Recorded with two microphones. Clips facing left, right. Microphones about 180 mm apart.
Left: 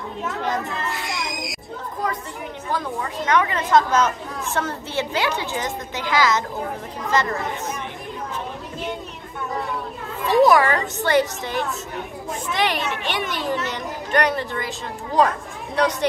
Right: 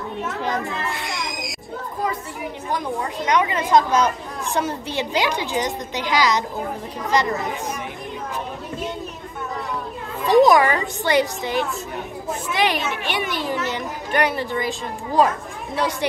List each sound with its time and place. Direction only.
2.7 s a child's voice: 15° right (ahead or behind)
10.2 s a child's voice: 15° right (ahead or behind)